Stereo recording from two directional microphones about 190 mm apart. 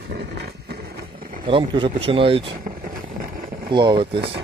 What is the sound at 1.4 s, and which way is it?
Speech, 25° right (ahead or behind).